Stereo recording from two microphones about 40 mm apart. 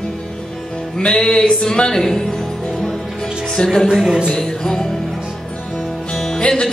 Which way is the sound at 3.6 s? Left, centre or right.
Left.